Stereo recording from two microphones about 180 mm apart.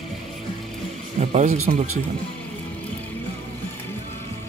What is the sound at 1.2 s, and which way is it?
Speech, 40° right (ahead or behind).